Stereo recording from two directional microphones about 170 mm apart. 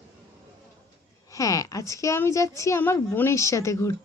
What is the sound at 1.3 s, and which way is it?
A woman's voice, 20° left (ahead or behind).